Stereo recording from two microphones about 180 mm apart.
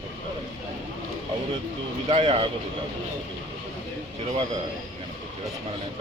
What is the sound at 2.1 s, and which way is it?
Speech, 30° right (ahead or behind).